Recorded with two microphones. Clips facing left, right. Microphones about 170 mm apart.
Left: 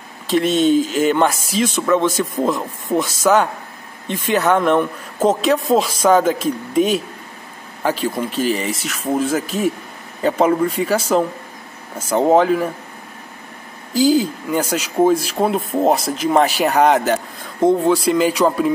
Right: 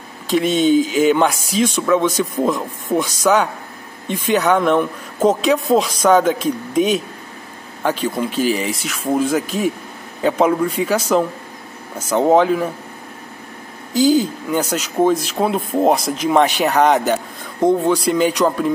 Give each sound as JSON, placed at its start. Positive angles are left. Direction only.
{"t": 0.3, "sound": "speech", "side_deg": 0}
{"t": 13.9, "sound": "speech", "side_deg": 0}